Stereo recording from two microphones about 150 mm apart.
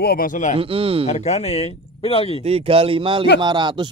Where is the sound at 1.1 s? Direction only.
50° left (ahead or behind).